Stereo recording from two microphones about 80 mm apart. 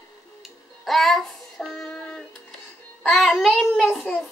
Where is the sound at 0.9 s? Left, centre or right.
Centre.